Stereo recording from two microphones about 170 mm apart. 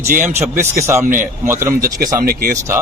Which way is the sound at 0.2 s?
15° right (ahead or behind).